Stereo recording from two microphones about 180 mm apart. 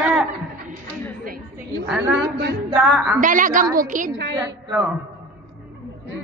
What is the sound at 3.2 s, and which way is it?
Speech, 45° right (ahead or behind).